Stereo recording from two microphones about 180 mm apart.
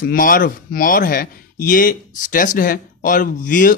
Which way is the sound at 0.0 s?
50° left (ahead or behind).